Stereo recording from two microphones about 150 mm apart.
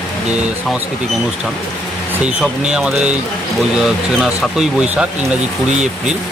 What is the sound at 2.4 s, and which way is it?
Speech, 5° right (ahead or behind).